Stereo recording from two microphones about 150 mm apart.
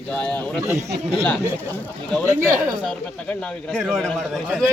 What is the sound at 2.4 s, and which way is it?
Speech, 20° right (ahead or behind).